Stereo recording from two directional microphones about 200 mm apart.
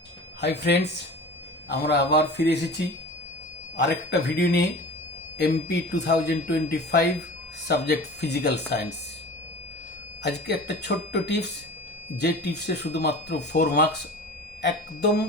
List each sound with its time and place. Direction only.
0.4 s speech: 55° left (ahead or behind)
10.2 s speech: 55° left (ahead or behind)